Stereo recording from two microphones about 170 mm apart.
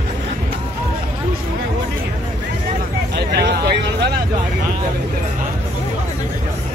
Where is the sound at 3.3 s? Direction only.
75° right (ahead or behind).